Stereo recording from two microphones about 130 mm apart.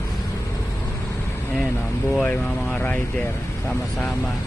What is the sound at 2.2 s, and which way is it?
Speech, 10° left (ahead or behind).